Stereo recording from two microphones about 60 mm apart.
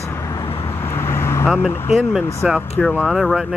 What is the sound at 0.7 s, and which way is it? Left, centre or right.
Vehicle, left.